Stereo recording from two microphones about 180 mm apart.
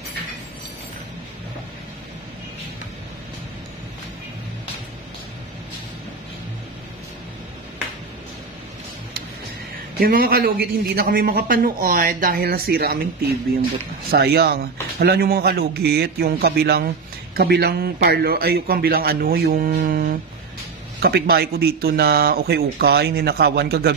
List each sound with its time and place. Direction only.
9.9 s a man's voice: 55° right (ahead or behind)
14.1 s a man's voice: 65° right (ahead or behind)
19.8 s a sound: 55° right (ahead or behind)
21.0 s a man's voice: 60° right (ahead or behind)